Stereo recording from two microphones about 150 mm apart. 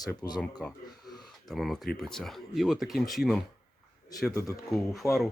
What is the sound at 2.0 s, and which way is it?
Speech, 5° left (ahead or behind).